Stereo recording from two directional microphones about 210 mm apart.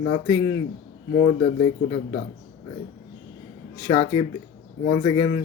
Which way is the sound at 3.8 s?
20° left (ahead or behind).